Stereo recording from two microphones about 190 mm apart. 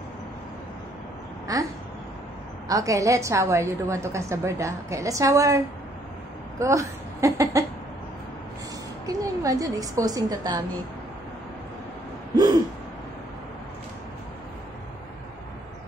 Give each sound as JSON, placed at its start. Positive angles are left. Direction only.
{"t": 1.5, "sound": "a woman's voice", "side_deg": -20}
{"t": 2.7, "sound": "a woman's voice", "side_deg": -15}
{"t": 6.6, "sound": "speech", "side_deg": -15}
{"t": 9.0, "sound": "a woman's voice", "side_deg": -20}